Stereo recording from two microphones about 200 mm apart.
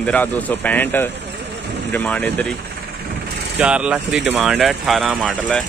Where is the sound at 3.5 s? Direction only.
5° right (ahead or behind).